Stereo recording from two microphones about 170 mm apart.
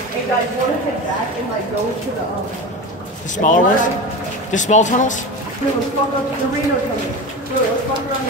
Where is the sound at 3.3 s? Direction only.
45° left (ahead or behind).